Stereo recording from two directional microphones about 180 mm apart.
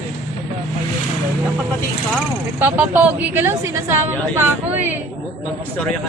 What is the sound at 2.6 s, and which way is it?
A woman's voice, 10° right (ahead or behind).